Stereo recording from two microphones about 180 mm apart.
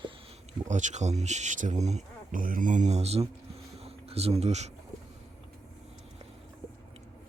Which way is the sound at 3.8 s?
35° right (ahead or behind).